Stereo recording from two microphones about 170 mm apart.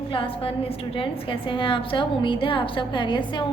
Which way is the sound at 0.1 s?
30° left (ahead or behind).